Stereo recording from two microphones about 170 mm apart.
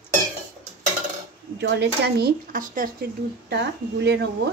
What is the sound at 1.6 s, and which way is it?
Speech, 80° right.